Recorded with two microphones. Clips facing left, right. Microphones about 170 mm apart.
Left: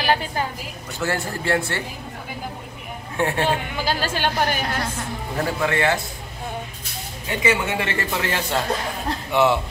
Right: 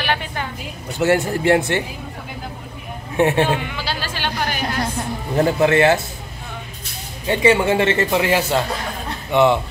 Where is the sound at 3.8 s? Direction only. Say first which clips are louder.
Left 3 dB; 45° left (ahead or behind).